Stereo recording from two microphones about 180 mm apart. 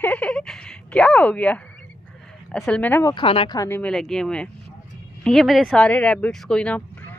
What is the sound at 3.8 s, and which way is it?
Speech, 5° left (ahead or behind).